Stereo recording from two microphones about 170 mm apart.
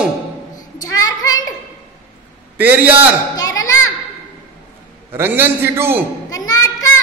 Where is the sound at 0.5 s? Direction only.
20° left (ahead or behind).